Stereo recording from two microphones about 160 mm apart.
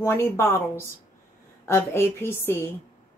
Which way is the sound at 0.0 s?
15° left (ahead or behind).